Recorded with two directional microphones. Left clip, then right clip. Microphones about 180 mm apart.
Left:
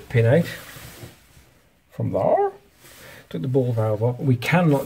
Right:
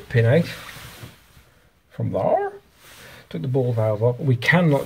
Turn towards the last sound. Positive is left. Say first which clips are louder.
# right 2 dB
turn(degrees=10)  # may be behind; listen again after turning